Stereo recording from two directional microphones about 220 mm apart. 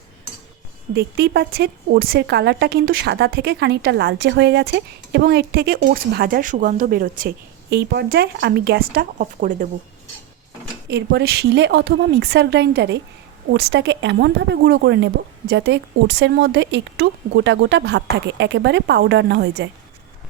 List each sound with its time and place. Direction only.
0.9 s speech: 45° right (ahead or behind)
10.8 s speech: 50° right (ahead or behind)